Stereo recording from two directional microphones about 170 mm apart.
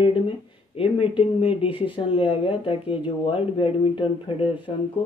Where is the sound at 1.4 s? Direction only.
35° left (ahead or behind).